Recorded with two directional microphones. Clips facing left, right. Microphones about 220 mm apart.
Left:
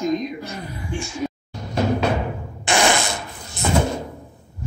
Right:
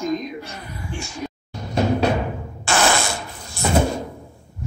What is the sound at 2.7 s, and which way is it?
Fart, 15° left (ahead or behind).